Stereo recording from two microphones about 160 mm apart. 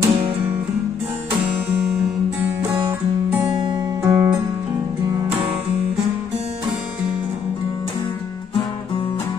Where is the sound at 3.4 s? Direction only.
30° right (ahead or behind).